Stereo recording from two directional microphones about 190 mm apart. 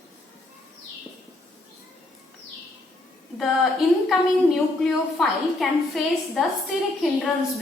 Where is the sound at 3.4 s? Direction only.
Centre (ahead or behind).